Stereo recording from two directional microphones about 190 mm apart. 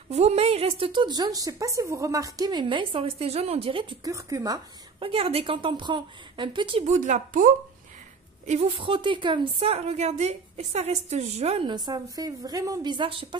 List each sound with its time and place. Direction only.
0.1 s a woman's voice: 35° right (ahead or behind)
4.0 s speech: 15° right (ahead or behind)
5.0 s a woman's voice: 30° right (ahead or behind)